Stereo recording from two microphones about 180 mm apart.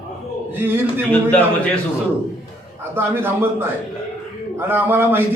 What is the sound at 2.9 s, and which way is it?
Speech, 10° right (ahead or behind).